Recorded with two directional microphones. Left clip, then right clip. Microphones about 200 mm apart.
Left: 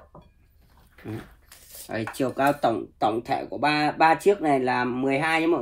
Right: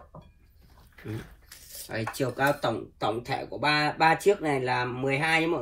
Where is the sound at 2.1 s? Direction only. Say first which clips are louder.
Left 3 dB; 30° left (ahead or behind).